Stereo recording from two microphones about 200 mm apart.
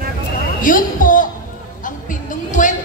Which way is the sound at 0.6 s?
40° left (ahead or behind).